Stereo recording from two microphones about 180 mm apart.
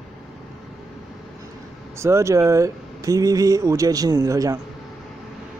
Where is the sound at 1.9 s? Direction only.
15° right (ahead or behind).